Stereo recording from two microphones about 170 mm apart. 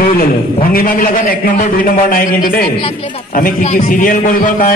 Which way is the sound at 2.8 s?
35° left (ahead or behind).